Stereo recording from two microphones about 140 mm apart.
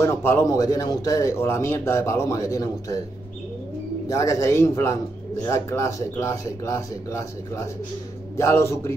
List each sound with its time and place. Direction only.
0.0 s a man's voice: 20° left (ahead or behind)
4.1 s a man's voice: 20° left (ahead or behind)